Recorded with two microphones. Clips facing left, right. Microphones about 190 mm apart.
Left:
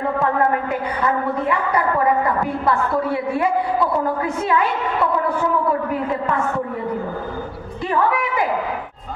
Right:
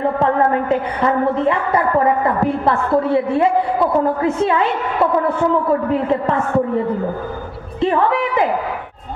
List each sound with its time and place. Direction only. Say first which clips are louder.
0.2 s a woman's voice: right 2 dB; 25° right (ahead or behind)
5.9 s a woman's voice: right 5 dB; 25° right (ahead or behind)
7.8 s a woman's voice: right 4 dB; 25° right (ahead or behind)